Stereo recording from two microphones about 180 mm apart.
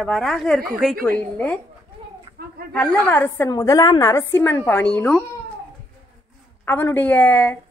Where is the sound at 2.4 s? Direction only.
60° right (ahead or behind).